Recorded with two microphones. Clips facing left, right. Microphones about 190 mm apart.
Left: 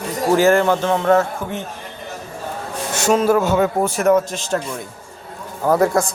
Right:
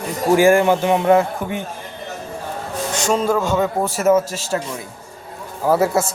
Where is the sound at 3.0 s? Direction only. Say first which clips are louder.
Left 3 dB; 5° left (ahead or behind).